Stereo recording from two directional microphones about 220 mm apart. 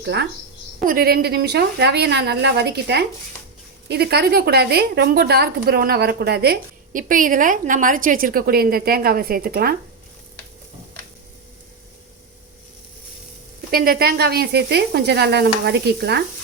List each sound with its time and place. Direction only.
0.0 s a woman's voice: 50° right (ahead or behind)
13.7 s a woman's voice: 40° right (ahead or behind)